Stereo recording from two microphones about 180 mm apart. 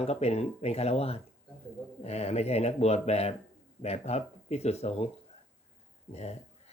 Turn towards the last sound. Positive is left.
turn(degrees=35)  # may be behind; listen again after turning